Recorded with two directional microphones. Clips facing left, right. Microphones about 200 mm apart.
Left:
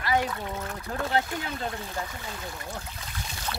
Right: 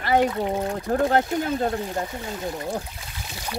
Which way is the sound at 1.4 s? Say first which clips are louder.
Right 9 dB; 40° right (ahead or behind).